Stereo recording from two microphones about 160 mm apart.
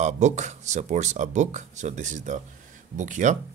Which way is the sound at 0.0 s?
45° right (ahead or behind).